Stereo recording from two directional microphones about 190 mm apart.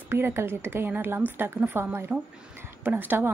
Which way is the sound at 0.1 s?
10° right (ahead or behind).